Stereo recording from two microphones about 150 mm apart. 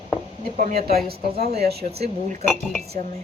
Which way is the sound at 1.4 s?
90° right.